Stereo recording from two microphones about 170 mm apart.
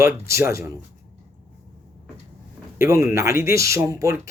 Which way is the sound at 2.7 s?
15° right (ahead or behind).